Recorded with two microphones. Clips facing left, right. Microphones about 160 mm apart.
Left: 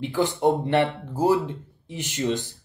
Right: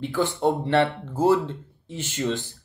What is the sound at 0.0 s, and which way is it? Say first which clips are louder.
A man's voice: left 1 dB; 15° left (ahead or behind).